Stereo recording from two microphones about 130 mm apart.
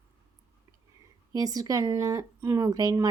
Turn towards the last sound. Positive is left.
turn(degrees=-30)  # may be behind; listen again after turning